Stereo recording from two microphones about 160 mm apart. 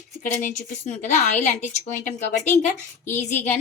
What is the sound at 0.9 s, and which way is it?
A woman's voice, 45° left (ahead or behind).